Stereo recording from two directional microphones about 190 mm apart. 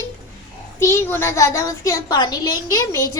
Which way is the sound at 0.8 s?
15° left (ahead or behind).